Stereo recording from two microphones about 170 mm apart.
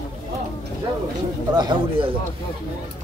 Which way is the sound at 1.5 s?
30° right (ahead or behind).